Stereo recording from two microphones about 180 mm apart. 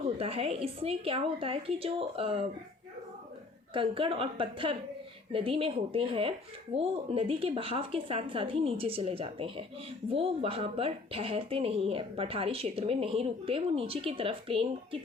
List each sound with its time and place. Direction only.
0.2 s speech: 30° right (ahead or behind)
3.8 s a woman's voice: 30° right (ahead or behind)